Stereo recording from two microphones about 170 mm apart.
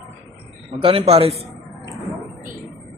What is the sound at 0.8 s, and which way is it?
Speech, 30° right (ahead or behind).